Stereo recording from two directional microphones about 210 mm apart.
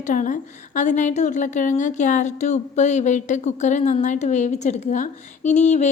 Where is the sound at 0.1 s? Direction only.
40° left (ahead or behind).